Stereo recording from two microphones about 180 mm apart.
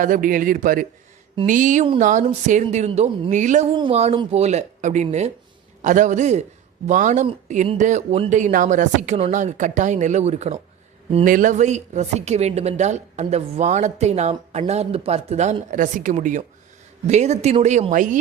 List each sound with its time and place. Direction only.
0.0 s a man's voice: 50° right (ahead or behind)